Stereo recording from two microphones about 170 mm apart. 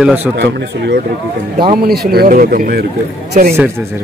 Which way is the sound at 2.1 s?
60° right (ahead or behind).